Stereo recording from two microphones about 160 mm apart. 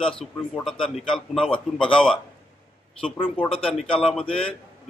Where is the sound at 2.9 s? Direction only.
35° left (ahead or behind).